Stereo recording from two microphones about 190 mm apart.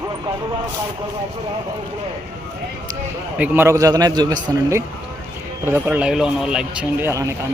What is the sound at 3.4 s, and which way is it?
Speech, 15° right (ahead or behind).